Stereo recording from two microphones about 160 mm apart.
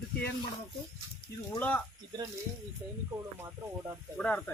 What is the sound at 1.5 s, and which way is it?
Speech, 10° left (ahead or behind).